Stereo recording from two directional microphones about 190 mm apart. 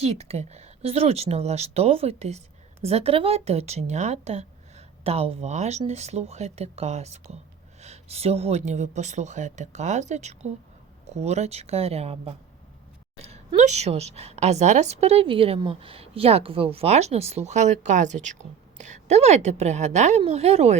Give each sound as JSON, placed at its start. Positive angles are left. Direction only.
{"t": 0.0, "sound": "a woman's voice", "side_deg": -35}